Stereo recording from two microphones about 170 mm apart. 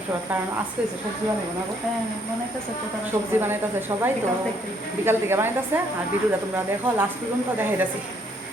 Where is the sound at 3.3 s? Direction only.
15° right (ahead or behind).